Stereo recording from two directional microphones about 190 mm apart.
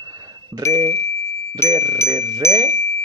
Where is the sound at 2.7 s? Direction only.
40° right (ahead or behind).